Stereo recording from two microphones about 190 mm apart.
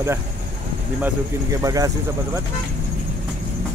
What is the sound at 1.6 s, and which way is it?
Speech, 20° right (ahead or behind).